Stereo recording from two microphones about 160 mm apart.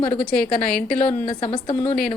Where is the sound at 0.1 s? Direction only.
5° left (ahead or behind).